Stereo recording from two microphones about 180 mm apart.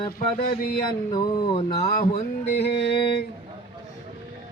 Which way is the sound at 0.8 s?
25° left (ahead or behind).